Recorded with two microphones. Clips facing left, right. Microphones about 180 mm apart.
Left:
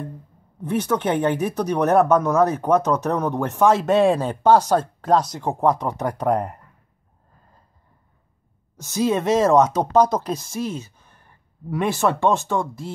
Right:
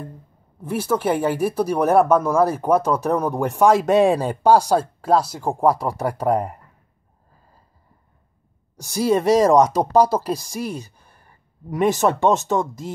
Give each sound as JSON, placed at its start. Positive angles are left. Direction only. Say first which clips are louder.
{"t": 0.6, "sound": "speech", "louder": "even", "side_deg": -5}
{"t": 8.7, "sound": "speech", "louder": "right 2 dB", "side_deg": -10}